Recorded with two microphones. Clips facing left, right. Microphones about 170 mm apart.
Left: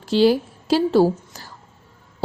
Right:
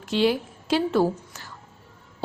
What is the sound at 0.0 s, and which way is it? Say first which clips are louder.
A woman's voice: left 6 dB; 35° left (ahead or behind).